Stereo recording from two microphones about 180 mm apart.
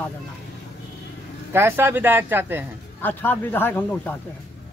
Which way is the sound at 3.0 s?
10° left (ahead or behind).